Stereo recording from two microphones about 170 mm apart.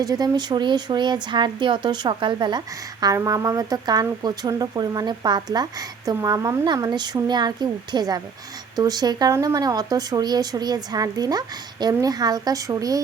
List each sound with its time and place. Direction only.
0.0 s speech: 25° right (ahead or behind)